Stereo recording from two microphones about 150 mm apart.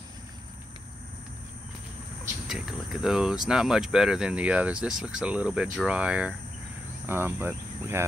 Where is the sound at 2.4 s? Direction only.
5° right (ahead or behind).